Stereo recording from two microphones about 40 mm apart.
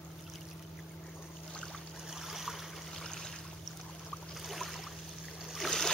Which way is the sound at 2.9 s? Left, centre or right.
Centre.